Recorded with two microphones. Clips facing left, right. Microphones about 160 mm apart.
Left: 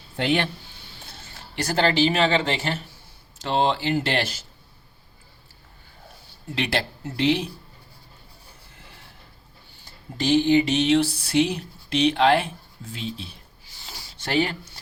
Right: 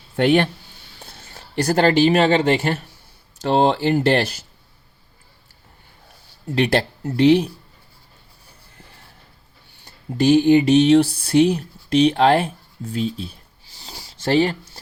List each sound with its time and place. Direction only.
0.2 s speech: 50° right (ahead or behind)
1.7 s speech: 50° right (ahead or behind)
6.5 s speech: 45° right (ahead or behind)
10.2 s speech: 50° right (ahead or behind)
13.7 s a sound: 35° right (ahead or behind)